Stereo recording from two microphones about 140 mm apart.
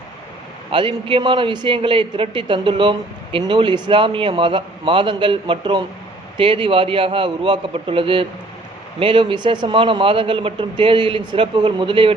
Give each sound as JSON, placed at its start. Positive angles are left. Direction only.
{"t": 0.7, "sound": "a man's voice", "side_deg": -40}